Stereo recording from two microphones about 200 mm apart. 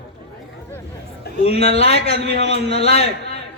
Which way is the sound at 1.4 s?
30° left (ahead or behind).